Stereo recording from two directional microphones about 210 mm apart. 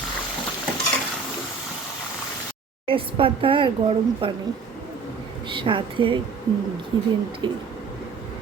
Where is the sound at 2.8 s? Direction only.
25° right (ahead or behind).